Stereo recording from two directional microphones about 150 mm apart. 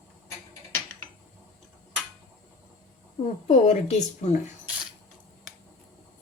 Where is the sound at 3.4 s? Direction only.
55° left (ahead or behind).